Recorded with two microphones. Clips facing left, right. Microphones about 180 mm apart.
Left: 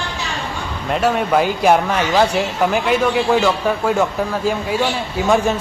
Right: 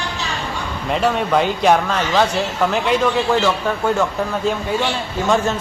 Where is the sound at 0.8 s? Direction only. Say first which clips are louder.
Left 1 dB; centre (ahead or behind).